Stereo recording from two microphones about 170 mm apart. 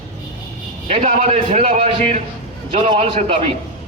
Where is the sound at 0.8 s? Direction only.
40° right (ahead or behind).